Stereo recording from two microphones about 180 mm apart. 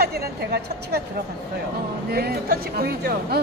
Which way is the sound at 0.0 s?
60° right (ahead or behind).